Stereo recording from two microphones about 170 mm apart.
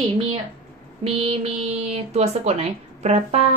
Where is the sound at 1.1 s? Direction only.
35° right (ahead or behind).